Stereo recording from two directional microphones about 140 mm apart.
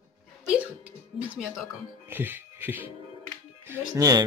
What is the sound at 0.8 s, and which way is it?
Speech, 10° right (ahead or behind).